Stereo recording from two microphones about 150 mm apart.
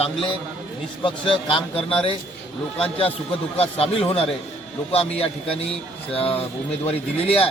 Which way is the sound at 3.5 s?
40° left (ahead or behind).